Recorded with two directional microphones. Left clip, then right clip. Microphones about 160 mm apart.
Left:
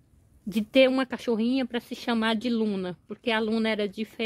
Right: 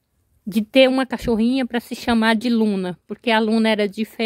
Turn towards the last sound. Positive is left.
turn(degrees=-35)  # may be behind; listen again after turning